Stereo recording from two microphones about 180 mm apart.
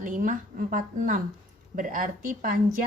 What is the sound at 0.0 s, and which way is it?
A woman's voice, 45° right (ahead or behind).